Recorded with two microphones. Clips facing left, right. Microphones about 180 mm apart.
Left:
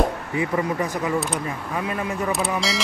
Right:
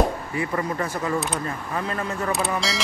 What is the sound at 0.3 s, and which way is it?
Speech, 15° left (ahead or behind).